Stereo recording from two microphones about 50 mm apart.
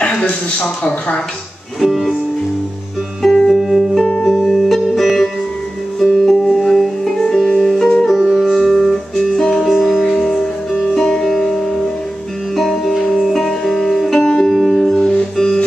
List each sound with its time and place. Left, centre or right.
0.0 s a sound: left
1.8 s music: centre
3.3 s music: centre
8.7 s music: centre
12.5 s music: centre
14.2 s music: centre
14.5 s music: centre